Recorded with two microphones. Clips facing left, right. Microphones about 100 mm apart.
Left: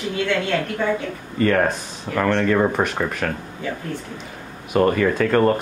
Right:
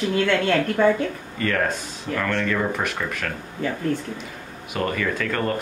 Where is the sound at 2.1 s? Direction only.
35° left (ahead or behind).